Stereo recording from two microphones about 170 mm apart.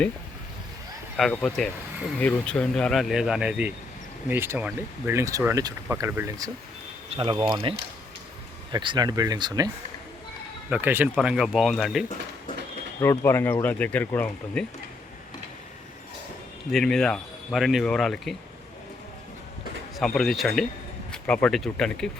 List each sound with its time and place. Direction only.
1.1 s speech: 5° left (ahead or behind); by 9.7 s 25° right (ahead or behind)
10.7 s speech: 10° right (ahead or behind)
13.0 s speech: 15° left (ahead or behind)
16.7 s speech: centre (ahead or behind)
20.0 s speech: centre (ahead or behind)